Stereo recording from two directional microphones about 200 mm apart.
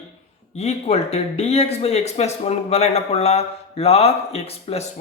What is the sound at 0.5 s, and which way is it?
Speech, 30° left (ahead or behind).